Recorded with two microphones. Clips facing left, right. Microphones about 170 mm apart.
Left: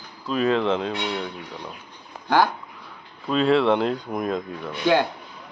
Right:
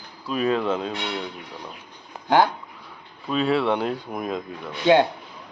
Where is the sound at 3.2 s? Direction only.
5° right (ahead or behind).